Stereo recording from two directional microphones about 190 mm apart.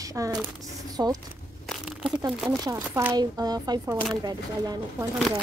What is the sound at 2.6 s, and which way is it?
Speech, 15° right (ahead or behind).